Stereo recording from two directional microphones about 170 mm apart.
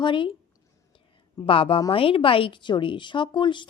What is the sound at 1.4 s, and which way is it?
A woman's voice, 30° left (ahead or behind).